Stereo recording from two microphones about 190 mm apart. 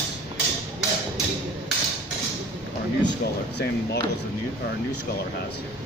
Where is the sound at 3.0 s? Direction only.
65° left (ahead or behind).